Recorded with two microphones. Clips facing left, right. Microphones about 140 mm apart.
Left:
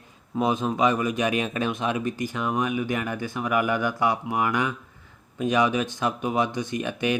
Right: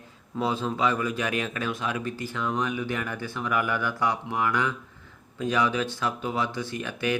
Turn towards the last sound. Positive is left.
turn(degrees=20)  # may be behind; listen again after turning